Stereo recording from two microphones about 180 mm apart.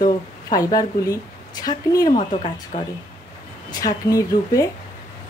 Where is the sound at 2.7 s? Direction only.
35° left (ahead or behind).